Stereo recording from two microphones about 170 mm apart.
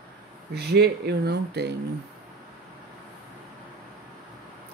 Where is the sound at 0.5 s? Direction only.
70° right (ahead or behind).